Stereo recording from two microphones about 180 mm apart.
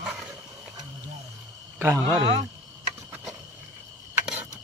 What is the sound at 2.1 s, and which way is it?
Speech, 30° right (ahead or behind).